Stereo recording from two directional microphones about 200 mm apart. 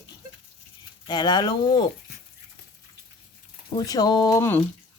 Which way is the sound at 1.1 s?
20° left (ahead or behind).